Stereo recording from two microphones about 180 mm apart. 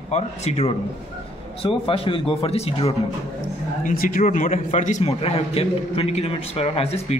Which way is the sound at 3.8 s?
50° left (ahead or behind).